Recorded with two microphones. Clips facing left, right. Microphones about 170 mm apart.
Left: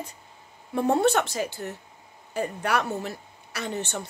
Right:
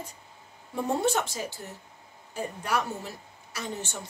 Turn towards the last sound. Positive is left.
turn(degrees=65)  # may be behind; listen again after turning